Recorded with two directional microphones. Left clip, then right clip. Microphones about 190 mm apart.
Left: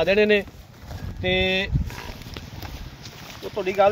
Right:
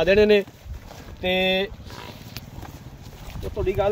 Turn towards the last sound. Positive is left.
turn(degrees=40)  # may be behind; listen again after turning